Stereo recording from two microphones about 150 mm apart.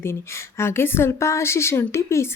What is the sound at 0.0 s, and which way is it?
A woman's voice, 15° left (ahead or behind).